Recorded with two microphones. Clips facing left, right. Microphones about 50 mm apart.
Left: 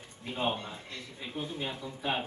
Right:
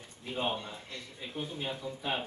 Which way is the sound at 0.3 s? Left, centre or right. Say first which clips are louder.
Left 1 dB; centre.